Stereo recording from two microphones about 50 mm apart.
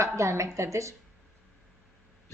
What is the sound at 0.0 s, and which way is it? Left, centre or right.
Speech, right.